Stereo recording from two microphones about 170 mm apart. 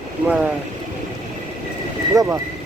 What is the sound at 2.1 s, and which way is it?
Speech, 15° right (ahead or behind).